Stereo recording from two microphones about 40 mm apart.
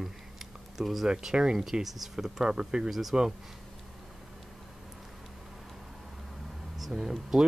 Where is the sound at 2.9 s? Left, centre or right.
Centre.